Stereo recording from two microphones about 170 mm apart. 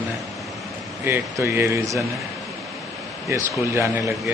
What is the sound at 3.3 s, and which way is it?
Speech, 15° right (ahead or behind).